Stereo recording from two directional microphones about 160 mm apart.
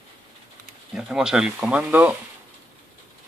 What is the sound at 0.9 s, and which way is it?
Speech, 5° right (ahead or behind).